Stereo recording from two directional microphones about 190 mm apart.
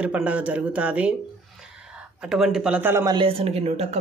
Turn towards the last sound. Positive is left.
turn(degrees=-35)  # may be behind; listen again after turning